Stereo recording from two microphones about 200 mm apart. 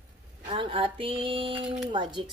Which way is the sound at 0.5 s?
25° right (ahead or behind).